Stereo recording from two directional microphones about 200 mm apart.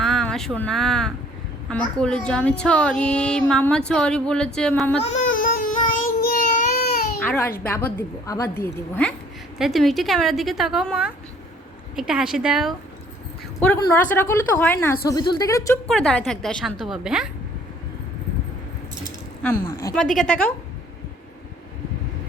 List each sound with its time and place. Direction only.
0.0 s speech: 5° left (ahead or behind)
5.3 s baby cry: 45° left (ahead or behind)
6.8 s baby cry: 50° left (ahead or behind)
7.2 s baby cry: 10° left (ahead or behind)
7.6 s a woman's voice: 10° left (ahead or behind)
9.6 s speech: centre (ahead or behind)
13.9 s a woman's voice: 10° left (ahead or behind)
15.1 s a woman's voice: 20° left (ahead or behind)
15.9 s speech: 5° left (ahead or behind)
19.6 s a woman's voice: 15° left (ahead or behind)
20.0 s speech: 5° left (ahead or behind)